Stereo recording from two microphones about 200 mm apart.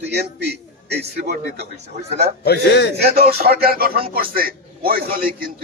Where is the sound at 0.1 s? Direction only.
55° right (ahead or behind).